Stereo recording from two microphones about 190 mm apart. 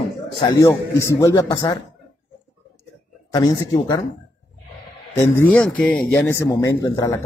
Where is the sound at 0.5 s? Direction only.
15° left (ahead or behind).